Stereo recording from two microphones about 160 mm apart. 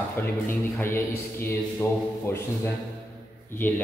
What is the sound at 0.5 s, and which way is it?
A man's voice, 15° left (ahead or behind).